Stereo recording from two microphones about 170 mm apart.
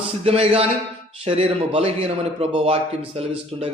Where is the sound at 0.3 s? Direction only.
35° right (ahead or behind).